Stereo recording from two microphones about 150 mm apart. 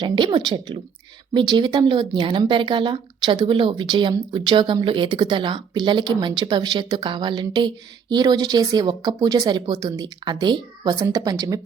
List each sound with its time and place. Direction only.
0.0 s speech: 30° right (ahead or behind)